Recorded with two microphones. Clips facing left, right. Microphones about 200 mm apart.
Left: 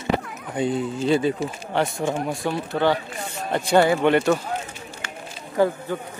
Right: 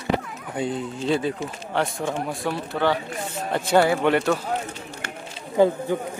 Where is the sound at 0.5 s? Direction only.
Centre (ahead or behind).